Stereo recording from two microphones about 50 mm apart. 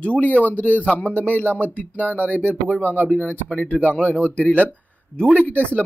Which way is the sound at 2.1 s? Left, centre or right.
Right.